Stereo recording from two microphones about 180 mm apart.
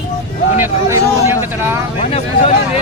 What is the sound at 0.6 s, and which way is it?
Speech, 15° right (ahead or behind).